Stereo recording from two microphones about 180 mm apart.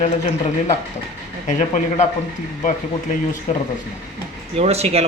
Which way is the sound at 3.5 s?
40° left (ahead or behind).